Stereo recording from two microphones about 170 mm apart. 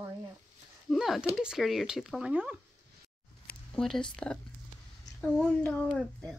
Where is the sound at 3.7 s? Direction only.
5° left (ahead or behind).